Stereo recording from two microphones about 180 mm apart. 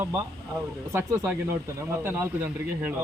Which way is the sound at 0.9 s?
15° right (ahead or behind).